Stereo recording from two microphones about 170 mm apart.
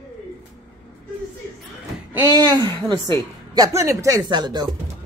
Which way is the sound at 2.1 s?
15° right (ahead or behind).